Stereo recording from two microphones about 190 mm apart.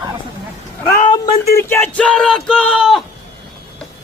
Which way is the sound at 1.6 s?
10° left (ahead or behind).